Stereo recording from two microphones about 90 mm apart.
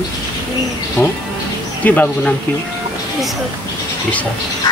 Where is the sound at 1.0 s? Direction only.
25° left (ahead or behind).